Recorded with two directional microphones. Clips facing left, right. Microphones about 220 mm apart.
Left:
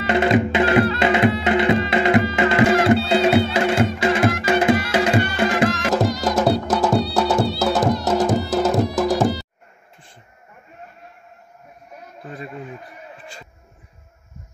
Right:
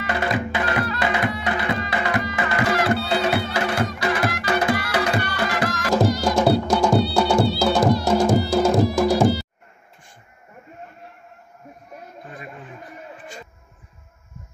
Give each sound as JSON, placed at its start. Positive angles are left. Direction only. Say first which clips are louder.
{"t": 0.0, "sound": "music", "louder": "left 7 dB", "side_deg": 25}
{"t": 5.9, "sound": "music", "louder": "right 4 dB", "side_deg": 0}